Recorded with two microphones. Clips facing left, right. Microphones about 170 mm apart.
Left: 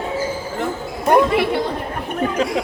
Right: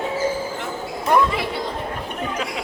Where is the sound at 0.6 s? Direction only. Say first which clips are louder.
Left 5 dB; 55° left (ahead or behind).